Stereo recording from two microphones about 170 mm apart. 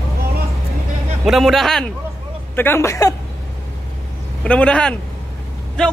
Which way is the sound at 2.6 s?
15° left (ahead or behind).